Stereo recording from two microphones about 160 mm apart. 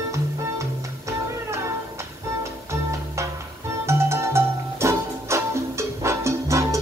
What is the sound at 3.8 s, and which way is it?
Music, 15° right (ahead or behind).